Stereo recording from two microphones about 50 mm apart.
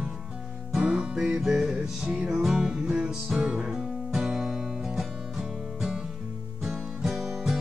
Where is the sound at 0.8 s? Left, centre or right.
Centre.